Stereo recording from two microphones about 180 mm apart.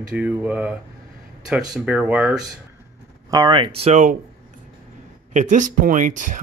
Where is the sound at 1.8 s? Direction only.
5° right (ahead or behind).